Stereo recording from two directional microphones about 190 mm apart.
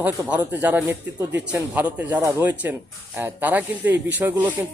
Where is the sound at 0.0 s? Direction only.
10° right (ahead or behind).